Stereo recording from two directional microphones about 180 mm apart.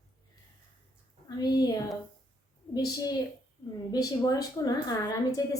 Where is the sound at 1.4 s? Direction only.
20° left (ahead or behind).